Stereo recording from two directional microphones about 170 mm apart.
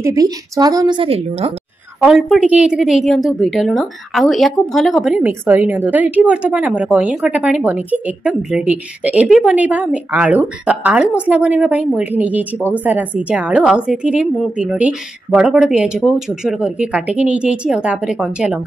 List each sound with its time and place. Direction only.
0.0 s a woman's voice: 20° right (ahead or behind)
2.0 s a woman's voice: centre (ahead or behind)